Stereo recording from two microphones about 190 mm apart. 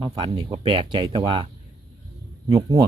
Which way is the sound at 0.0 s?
20° right (ahead or behind).